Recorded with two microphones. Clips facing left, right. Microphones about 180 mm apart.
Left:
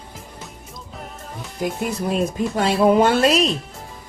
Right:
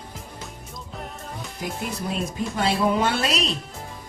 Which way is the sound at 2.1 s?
45° left (ahead or behind).